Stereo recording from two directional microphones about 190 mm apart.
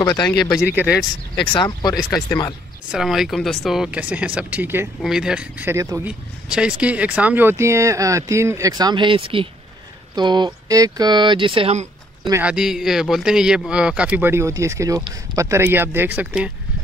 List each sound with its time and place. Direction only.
0.3 s speech: centre (ahead or behind)
1.6 s speech: 20° left (ahead or behind)
2.0 s speech: 5° left (ahead or behind); by 11.9 s 35° right (ahead or behind)
12.3 s speech: 10° right (ahead or behind)